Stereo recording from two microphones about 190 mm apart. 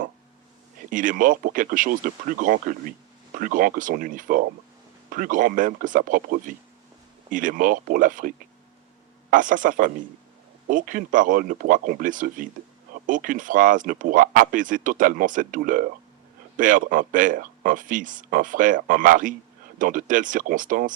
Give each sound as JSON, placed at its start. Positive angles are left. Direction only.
{"t": 0.9, "sound": "speech", "side_deg": -45}
{"t": 9.3, "sound": "speech", "side_deg": -45}